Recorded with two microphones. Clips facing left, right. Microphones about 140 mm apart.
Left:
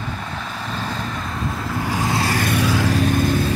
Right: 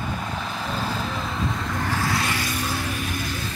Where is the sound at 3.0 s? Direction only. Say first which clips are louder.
Left 11 dB; 50° left (ahead or behind).